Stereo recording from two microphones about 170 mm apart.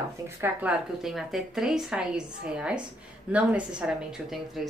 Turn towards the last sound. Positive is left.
turn(degrees=0)  # may be behind; listen again after turning